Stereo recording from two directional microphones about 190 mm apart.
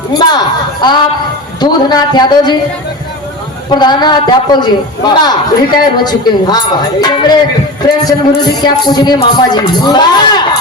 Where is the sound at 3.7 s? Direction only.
20° left (ahead or behind).